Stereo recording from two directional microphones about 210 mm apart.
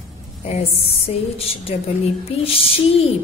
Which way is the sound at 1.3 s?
30° left (ahead or behind).